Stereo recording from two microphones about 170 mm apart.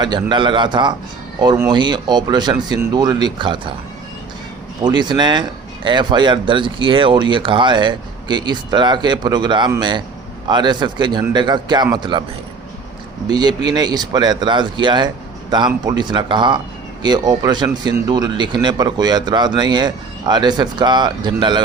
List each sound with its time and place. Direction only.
0.0 s speech: 25° right (ahead or behind)
4.8 s speech: 25° right (ahead or behind)
13.2 s speech: 25° right (ahead or behind)